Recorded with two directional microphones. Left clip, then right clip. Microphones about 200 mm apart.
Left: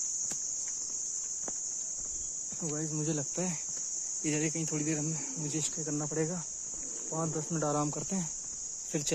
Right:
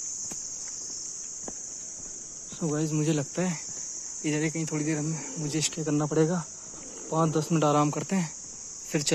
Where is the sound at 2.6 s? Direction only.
15° right (ahead or behind).